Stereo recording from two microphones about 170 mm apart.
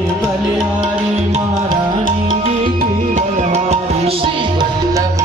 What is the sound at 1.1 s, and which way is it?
Music, 40° right (ahead or behind).